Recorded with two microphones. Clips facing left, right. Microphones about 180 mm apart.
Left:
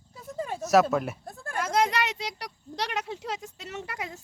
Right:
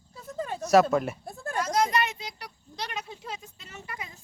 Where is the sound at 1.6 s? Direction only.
60° left (ahead or behind).